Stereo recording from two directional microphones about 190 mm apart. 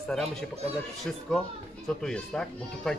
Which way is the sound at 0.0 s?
Centre (ahead or behind).